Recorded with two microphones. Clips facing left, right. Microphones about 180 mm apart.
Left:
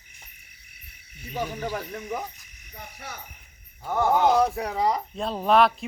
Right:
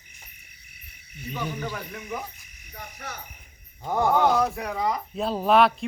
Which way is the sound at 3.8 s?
15° right (ahead or behind).